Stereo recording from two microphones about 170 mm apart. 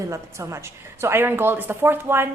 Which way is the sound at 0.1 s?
15° right (ahead or behind).